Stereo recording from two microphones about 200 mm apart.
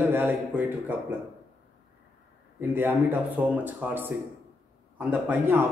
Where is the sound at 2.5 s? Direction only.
10° right (ahead or behind).